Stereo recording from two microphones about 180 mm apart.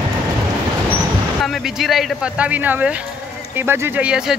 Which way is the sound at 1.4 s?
Centre (ahead or behind).